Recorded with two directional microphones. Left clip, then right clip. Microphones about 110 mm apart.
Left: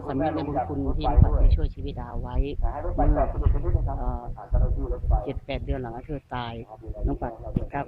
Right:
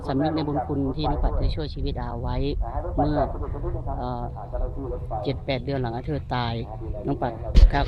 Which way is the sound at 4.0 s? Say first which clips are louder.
Right 4 dB; 20° right (ahead or behind).